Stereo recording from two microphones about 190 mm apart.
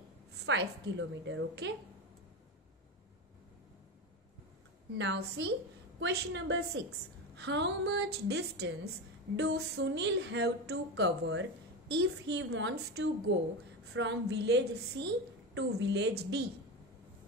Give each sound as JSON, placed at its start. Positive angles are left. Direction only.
{"t": 0.5, "sound": "a woman's voice", "side_deg": -70}
{"t": 4.9, "sound": "a woman's voice", "side_deg": -65}
{"t": 7.3, "sound": "a sound", "side_deg": -65}